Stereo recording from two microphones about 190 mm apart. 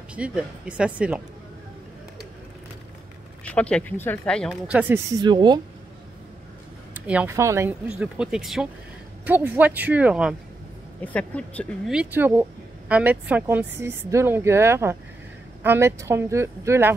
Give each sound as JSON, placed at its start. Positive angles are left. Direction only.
{"t": 0.1, "sound": "speech", "side_deg": -5}
{"t": 3.4, "sound": "speech", "side_deg": 5}
{"t": 4.6, "sound": "speech", "side_deg": -10}
{"t": 7.1, "sound": "speech", "side_deg": -10}
{"t": 8.0, "sound": "speech", "side_deg": -5}
{"t": 11.0, "sound": "speech", "side_deg": 5}